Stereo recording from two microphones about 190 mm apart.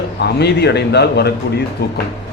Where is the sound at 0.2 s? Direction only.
60° left (ahead or behind).